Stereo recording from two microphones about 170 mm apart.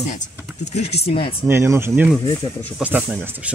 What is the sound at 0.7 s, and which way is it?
Speech, 40° left (ahead or behind).